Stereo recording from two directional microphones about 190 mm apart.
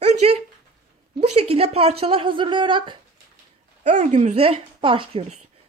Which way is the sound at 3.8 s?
40° right (ahead or behind).